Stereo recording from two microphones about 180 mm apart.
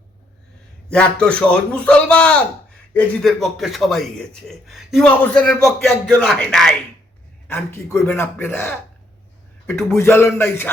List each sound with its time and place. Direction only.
0.9 s a man's voice: 5° left (ahead or behind)
7.4 s speech: 15° left (ahead or behind)